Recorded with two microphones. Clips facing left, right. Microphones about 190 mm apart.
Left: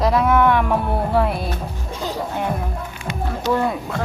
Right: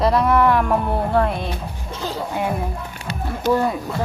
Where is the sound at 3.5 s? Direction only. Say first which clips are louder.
Even; 10° right (ahead or behind).